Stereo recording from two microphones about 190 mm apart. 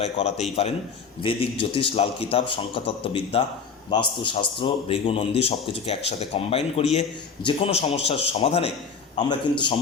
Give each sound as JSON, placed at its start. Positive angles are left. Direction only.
{"t": 0.0, "sound": "a man's voice", "side_deg": 35}